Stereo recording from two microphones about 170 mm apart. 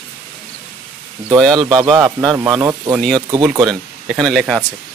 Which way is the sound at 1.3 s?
Centre (ahead or behind).